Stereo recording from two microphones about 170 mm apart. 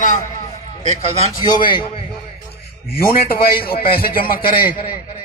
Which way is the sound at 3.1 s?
60° left (ahead or behind).